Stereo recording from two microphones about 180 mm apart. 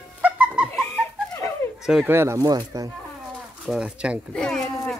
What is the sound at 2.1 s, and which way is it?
Speech, 15° right (ahead or behind).